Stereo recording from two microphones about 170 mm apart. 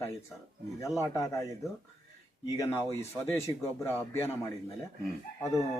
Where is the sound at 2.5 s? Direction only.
20° left (ahead or behind).